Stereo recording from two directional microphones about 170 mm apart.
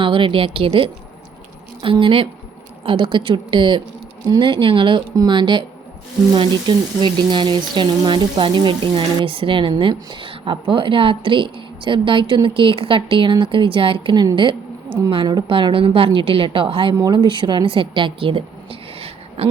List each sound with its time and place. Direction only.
0.0 s a woman's voice: 30° right (ahead or behind)